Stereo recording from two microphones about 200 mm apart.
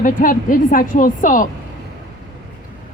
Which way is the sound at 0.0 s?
45° left (ahead or behind).